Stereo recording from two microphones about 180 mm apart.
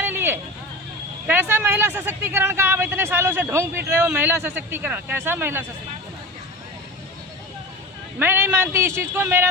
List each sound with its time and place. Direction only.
0.0 s hubbub: 10° right (ahead or behind)
1.3 s a man's voice: 10° right (ahead or behind)
8.2 s a man's voice: 10° right (ahead or behind)